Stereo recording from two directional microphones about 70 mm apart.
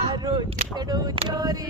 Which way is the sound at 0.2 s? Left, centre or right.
Right.